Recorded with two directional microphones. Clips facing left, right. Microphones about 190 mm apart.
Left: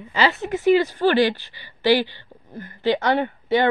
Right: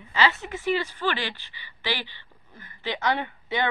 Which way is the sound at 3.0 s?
55° left (ahead or behind).